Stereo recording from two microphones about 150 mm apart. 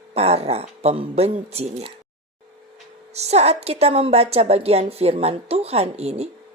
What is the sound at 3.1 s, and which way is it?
A woman's voice, 45° right (ahead or behind).